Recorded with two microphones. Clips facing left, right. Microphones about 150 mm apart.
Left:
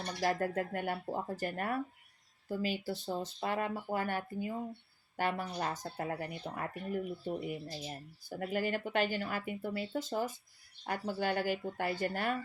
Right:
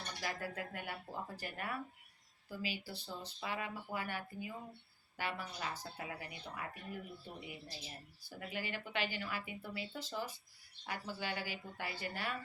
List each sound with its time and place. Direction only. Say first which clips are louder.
0.2 s speech: left 11 dB; 50° left (ahead or behind)